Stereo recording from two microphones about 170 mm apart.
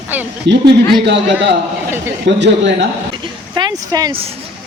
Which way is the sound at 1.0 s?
90° right.